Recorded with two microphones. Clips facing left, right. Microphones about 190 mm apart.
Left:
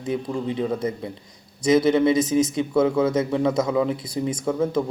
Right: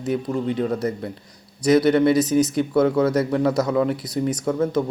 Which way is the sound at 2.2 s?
25° left (ahead or behind).